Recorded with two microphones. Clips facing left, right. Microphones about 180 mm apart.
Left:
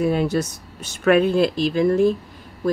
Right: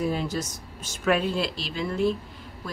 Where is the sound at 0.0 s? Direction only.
65° left (ahead or behind).